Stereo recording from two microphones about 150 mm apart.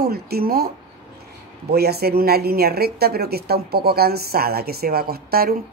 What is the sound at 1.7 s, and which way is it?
Speech, 90° right.